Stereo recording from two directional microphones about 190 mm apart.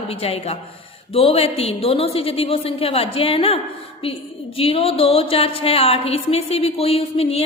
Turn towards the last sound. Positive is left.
turn(degrees=30)  # may be behind; listen again after turning